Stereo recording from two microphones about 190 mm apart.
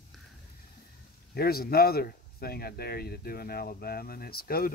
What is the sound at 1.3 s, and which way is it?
Speech, 55° left (ahead or behind).